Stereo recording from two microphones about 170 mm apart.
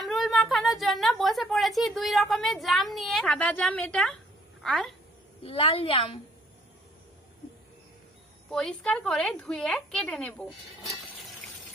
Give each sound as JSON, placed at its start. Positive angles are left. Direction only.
{"t": 0.0, "sound": "a sound", "side_deg": 0}
{"t": 1.8, "sound": "a woman's voice", "side_deg": 0}
{"t": 5.4, "sound": "a woman's voice", "side_deg": 35}
{"t": 8.5, "sound": "a woman's voice", "side_deg": 0}